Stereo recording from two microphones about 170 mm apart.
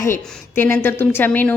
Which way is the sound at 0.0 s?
15° left (ahead or behind).